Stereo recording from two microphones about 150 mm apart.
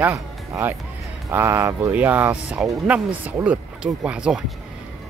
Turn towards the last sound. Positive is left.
turn(degrees=-5)  # may be behind; listen again after turning